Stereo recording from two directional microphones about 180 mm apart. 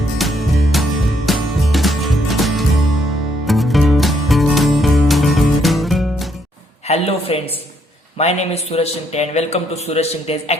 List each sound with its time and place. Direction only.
0.2 s music: centre (ahead or behind)
6.8 s a woman's voice: 35° left (ahead or behind)